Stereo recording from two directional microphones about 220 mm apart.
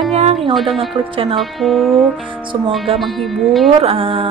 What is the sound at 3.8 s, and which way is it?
Speech, 25° right (ahead or behind).